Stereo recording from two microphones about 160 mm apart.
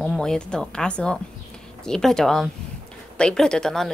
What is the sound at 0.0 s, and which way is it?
A woman's voice, 5° left (ahead or behind).